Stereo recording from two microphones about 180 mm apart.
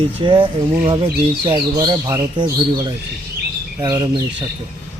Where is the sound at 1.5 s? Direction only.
25° right (ahead or behind).